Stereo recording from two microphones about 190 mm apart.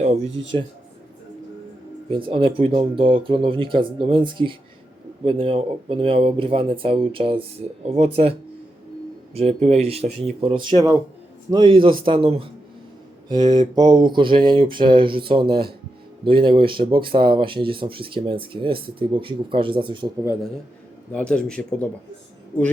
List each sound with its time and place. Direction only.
0.0 s speech: 35° right (ahead or behind)
2.0 s speech: 25° right (ahead or behind)
21.1 s a man's voice: 5° left (ahead or behind)